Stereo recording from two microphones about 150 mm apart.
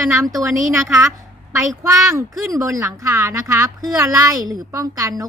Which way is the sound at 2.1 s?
20° right (ahead or behind).